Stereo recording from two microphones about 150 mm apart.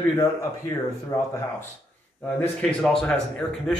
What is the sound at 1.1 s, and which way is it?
Speech, 20° left (ahead or behind).